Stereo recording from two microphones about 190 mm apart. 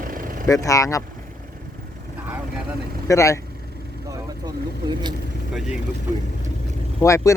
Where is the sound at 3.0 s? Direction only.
15° left (ahead or behind).